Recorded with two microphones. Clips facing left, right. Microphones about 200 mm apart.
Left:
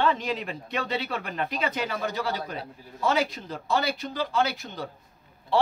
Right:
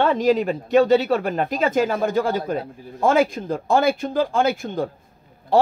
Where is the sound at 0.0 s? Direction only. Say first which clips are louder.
Right 9 dB; 45° right (ahead or behind).